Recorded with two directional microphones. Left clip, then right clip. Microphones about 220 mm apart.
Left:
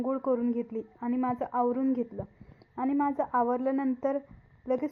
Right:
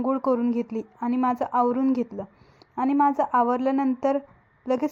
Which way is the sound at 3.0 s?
30° right (ahead or behind).